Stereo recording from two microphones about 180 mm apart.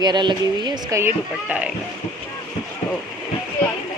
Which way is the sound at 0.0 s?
25° right (ahead or behind).